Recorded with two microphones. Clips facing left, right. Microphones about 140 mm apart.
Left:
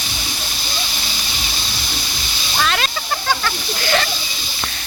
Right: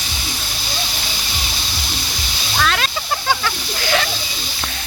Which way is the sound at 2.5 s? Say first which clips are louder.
Right 1 dB; centre (ahead or behind).